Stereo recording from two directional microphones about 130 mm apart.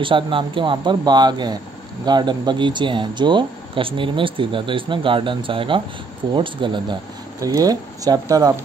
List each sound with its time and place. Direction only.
0.0 s speech: 40° right (ahead or behind)
7.3 s speech: 30° right (ahead or behind)